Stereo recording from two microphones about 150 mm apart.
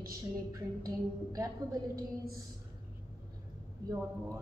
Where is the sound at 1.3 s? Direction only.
25° right (ahead or behind).